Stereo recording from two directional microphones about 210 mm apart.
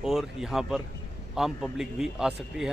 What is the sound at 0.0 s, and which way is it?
Speech, centre (ahead or behind).